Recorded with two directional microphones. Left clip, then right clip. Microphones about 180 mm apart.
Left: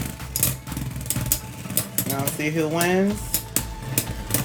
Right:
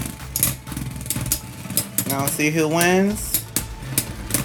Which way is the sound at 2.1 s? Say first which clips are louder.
Right 5 dB; 40° right (ahead or behind).